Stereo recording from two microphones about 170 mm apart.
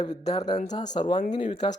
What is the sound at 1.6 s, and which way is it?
Speech, 30° left (ahead or behind).